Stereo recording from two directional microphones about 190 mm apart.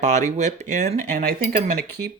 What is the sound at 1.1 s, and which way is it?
Speech, 55° right (ahead or behind).